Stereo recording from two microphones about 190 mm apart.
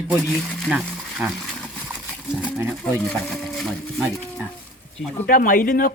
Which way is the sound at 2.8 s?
5° left (ahead or behind).